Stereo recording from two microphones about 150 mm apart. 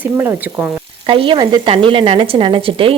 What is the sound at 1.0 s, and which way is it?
Speech, 35° right (ahead or behind).